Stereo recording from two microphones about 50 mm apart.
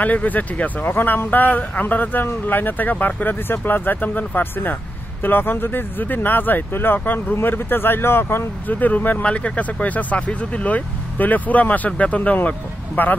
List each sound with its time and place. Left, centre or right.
0.0 s speech: left
0.9 s speech: left
8.7 s speech: left